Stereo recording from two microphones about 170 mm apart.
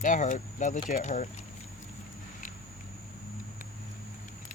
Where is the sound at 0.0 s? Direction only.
50° left (ahead or behind).